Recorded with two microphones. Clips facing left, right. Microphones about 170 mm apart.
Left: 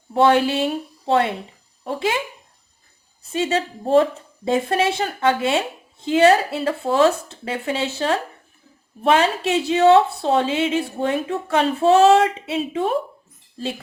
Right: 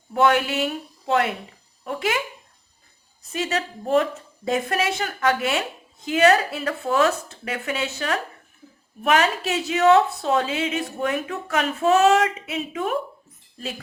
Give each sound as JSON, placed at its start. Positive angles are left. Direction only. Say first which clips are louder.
{"t": 0.1, "sound": "a woman's voice", "louder": "left 4 dB", "side_deg": 30}
{"t": 3.3, "sound": "a woman's voice", "louder": "left 4 dB", "side_deg": 30}